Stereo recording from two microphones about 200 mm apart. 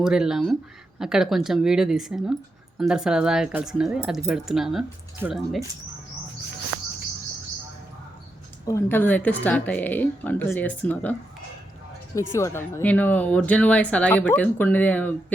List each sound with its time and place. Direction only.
0.0 s speech: 5° right (ahead or behind)
6.7 s cricket: 55° right (ahead or behind)
8.6 s speech: 10° left (ahead or behind)
12.3 s speech: 15° left (ahead or behind)